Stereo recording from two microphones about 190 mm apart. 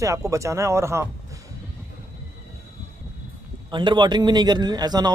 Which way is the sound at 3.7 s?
25° right (ahead or behind).